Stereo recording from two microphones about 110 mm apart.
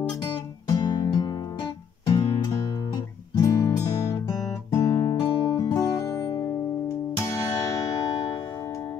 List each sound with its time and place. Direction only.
0.7 s music: 35° left (ahead or behind)